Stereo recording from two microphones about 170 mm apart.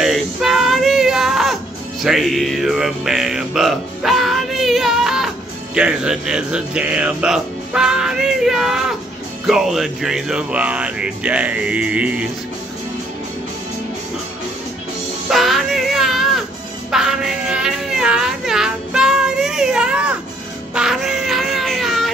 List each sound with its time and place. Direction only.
0.0 s a sound: centre (ahead or behind)
2.0 s music: centre (ahead or behind)
5.8 s speech: 5° right (ahead or behind)
9.5 s music: centre (ahead or behind)
15.2 s child singing: centre (ahead or behind)
16.9 s music: 5° right (ahead or behind)
20.7 s a sound: 5° right (ahead or behind)